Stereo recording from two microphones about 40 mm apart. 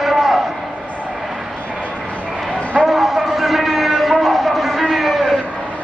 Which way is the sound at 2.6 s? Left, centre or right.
Left.